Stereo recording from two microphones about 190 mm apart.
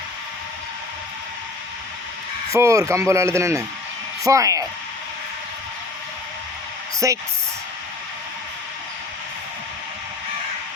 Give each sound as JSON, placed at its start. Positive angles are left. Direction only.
{"t": 2.5, "sound": "speech", "side_deg": -15}
{"t": 7.0, "sound": "speech", "side_deg": -15}